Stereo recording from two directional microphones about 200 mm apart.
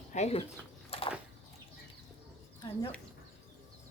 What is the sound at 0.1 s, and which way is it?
Speech, 35° left (ahead or behind).